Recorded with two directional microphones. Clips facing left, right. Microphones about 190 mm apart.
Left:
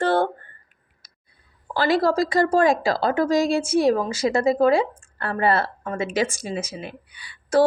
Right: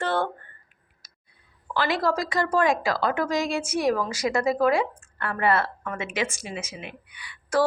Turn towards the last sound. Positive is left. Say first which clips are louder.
# left 5 dB
turn(degrees=30)  # may be behind; listen again after turning